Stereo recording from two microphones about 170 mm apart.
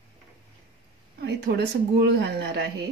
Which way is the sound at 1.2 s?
75° right (ahead or behind).